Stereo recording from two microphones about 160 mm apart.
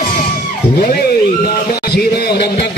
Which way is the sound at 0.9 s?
75° left (ahead or behind).